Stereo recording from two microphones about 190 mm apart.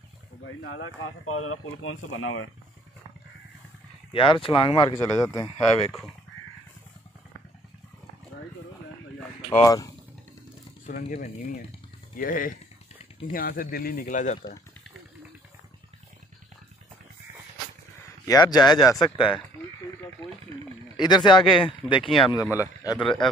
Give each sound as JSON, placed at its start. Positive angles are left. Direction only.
{"t": 0.7, "sound": "speech", "side_deg": 90}
{"t": 4.1, "sound": "speech", "side_deg": 30}
{"t": 4.9, "sound": "speech", "side_deg": 20}
{"t": 9.5, "sound": "speech", "side_deg": 20}
{"t": 10.9, "sound": "speech", "side_deg": 50}
{"t": 18.2, "sound": "speech", "side_deg": 20}
{"t": 20.9, "sound": "speech", "side_deg": 25}
{"t": 23.0, "sound": "speech", "side_deg": 5}